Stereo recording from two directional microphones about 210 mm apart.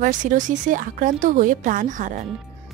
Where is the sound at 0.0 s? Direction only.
40° right (ahead or behind).